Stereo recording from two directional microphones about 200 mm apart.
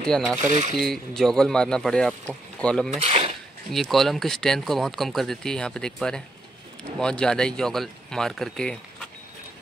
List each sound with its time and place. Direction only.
0.0 s speech: 5° left (ahead or behind)
0.4 s speech: 40° right (ahead or behind)
0.7 s speech: centre (ahead or behind)
2.9 s speech: 30° right (ahead or behind)
3.7 s speech: centre (ahead or behind)